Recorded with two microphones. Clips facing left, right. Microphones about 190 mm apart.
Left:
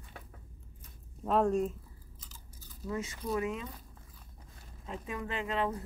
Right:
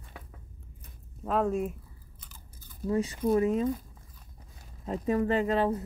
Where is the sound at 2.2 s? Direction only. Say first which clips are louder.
Right 1 dB; 55° right (ahead or behind).